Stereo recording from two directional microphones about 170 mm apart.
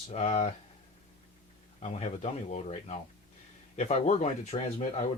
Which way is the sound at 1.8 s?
40° left (ahead or behind).